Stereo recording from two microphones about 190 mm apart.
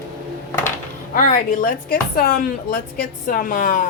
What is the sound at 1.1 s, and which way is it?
Speech, 45° left (ahead or behind).